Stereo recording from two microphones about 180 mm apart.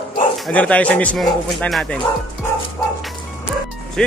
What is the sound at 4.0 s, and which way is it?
Speech, 5° left (ahead or behind).